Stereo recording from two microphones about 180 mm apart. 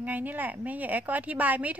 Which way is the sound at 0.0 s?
10° right (ahead or behind).